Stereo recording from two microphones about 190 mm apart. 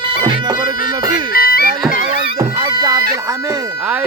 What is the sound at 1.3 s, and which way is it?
Music, 50° left (ahead or behind).